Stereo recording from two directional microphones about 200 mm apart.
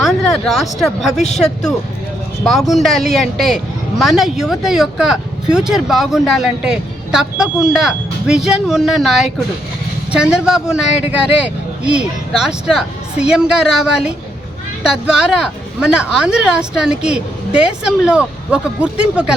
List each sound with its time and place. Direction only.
0.0 s speech: centre (ahead or behind)
1.1 s speech: 35° left (ahead or behind)
2.4 s a man's voice: centre (ahead or behind)